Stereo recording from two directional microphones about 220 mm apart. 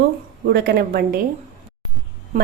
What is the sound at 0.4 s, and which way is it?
Speech, 45° right (ahead or behind).